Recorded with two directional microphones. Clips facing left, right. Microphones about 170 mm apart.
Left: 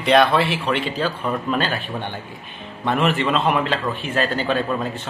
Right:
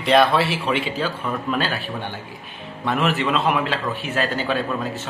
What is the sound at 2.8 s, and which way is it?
A man's voice, centre (ahead or behind).